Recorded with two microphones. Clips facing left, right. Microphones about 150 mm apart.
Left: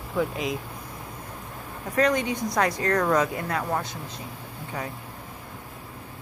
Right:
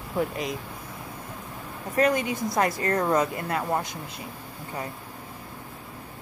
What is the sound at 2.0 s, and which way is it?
Speech, 5° right (ahead or behind).